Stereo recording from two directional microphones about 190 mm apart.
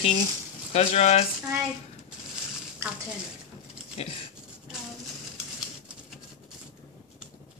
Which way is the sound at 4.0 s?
35° left (ahead or behind).